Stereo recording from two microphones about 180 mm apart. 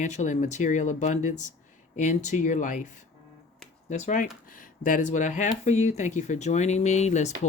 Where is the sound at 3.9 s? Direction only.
40° left (ahead or behind).